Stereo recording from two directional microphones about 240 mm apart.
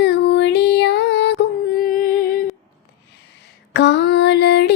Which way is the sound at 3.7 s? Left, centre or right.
Left.